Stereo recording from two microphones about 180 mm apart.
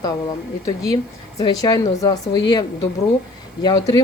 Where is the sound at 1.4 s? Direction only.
20° left (ahead or behind).